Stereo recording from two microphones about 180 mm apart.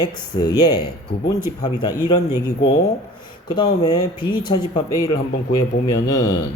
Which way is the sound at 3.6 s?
30° left (ahead or behind).